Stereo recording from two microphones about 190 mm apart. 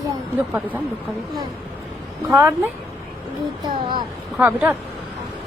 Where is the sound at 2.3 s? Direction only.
15° right (ahead or behind).